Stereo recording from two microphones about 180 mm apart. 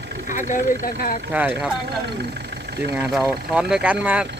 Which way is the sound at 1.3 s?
10° right (ahead or behind).